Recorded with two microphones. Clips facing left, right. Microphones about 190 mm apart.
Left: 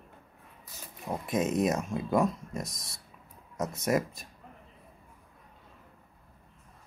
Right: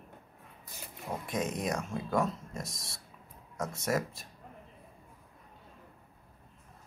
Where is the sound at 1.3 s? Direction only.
20° left (ahead or behind).